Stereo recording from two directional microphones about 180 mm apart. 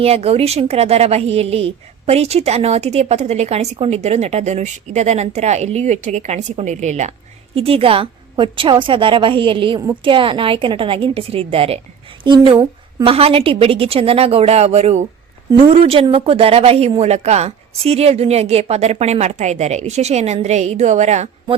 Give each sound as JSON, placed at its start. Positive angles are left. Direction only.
{"t": 0.0, "sound": "a woman's voice", "side_deg": -35}